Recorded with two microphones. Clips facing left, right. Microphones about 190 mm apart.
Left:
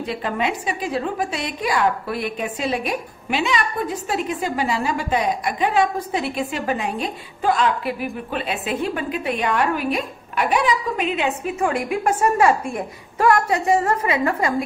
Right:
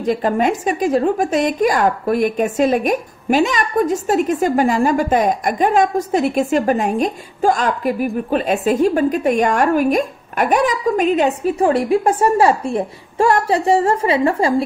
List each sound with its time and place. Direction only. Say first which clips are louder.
0.0 s a woman's voice: right 7 dB; 45° right (ahead or behind)